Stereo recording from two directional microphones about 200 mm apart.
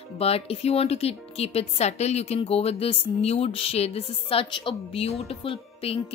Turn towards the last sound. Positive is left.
turn(degrees=30)  # may be behind; listen again after turning